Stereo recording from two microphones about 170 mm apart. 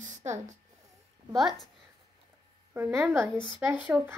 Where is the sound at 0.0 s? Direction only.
45° right (ahead or behind).